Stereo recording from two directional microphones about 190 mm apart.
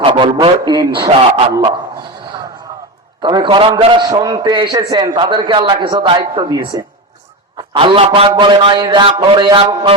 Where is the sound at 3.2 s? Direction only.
25° right (ahead or behind).